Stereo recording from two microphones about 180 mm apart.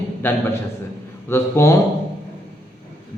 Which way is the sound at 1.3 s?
15° left (ahead or behind).